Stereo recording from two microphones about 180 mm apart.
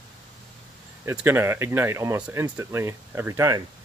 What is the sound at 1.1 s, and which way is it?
Speech, 10° right (ahead or behind).